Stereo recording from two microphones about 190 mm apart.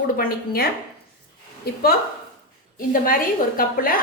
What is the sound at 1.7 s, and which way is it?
A woman's voice, 55° left (ahead or behind).